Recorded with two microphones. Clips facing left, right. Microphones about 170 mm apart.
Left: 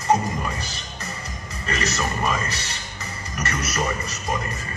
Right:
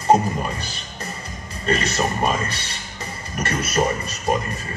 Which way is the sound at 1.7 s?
30° right (ahead or behind).